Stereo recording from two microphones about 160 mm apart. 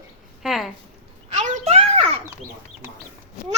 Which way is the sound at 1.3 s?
45° right (ahead or behind).